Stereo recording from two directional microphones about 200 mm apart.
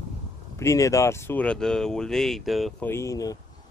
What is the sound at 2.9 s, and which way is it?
Speech, 15° left (ahead or behind).